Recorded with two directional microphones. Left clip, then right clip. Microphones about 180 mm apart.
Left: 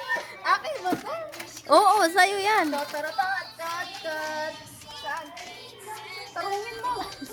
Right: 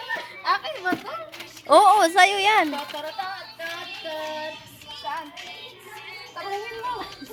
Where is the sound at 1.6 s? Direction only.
5° right (ahead or behind).